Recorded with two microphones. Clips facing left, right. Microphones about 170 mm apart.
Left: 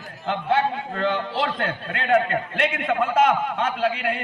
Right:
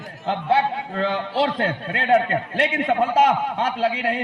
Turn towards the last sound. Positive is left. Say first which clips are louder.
# right 1 dB
turn(degrees=-30)  # may be behind; listen again after turning